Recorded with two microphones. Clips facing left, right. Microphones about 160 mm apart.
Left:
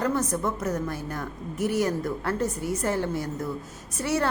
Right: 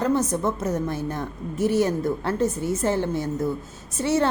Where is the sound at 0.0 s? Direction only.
25° right (ahead or behind).